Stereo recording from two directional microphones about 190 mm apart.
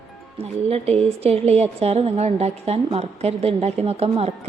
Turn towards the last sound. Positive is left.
turn(degrees=-30)  # may be behind; listen again after turning